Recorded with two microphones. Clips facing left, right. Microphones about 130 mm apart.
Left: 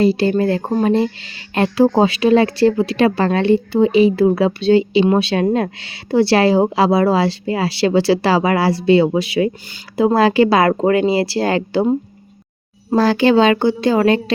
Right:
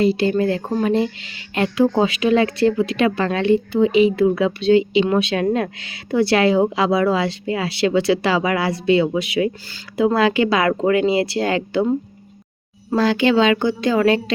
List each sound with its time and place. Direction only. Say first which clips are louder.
0.0 s speech: left 2 dB; 35° left (ahead or behind)
13.0 s speech: left 3 dB; 35° left (ahead or behind)